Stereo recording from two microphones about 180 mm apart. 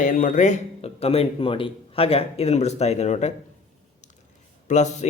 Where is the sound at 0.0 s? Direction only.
45° left (ahead or behind).